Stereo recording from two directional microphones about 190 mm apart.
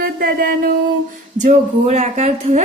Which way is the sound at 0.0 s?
50° right (ahead or behind).